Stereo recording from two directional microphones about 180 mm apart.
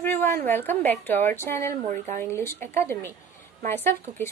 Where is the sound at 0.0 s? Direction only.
10° left (ahead or behind).